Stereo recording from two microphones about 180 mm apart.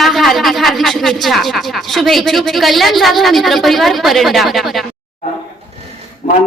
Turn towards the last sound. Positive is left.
turn(degrees=40)  # may be behind; listen again after turning